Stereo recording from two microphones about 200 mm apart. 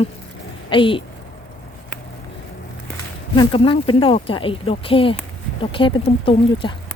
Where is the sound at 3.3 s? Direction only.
25° left (ahead or behind).